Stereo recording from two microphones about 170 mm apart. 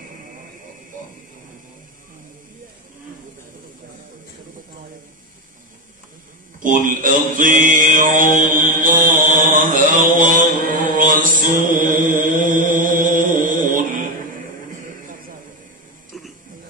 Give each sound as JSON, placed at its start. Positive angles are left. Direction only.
{"t": 6.6, "sound": "mantra", "side_deg": -50}